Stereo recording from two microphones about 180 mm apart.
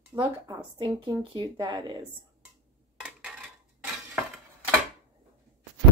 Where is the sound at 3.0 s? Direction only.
5° right (ahead or behind).